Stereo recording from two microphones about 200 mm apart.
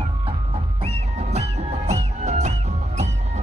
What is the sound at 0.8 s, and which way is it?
Music, 30° right (ahead or behind).